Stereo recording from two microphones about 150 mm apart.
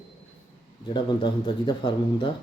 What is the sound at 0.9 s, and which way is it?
Speech, 30° left (ahead or behind).